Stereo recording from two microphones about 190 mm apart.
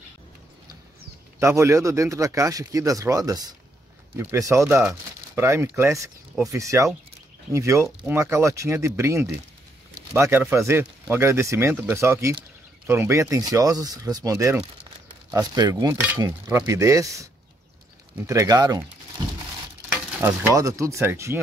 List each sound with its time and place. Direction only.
1.4 s speech: 15° right (ahead or behind)
20.2 s speech: 15° right (ahead or behind)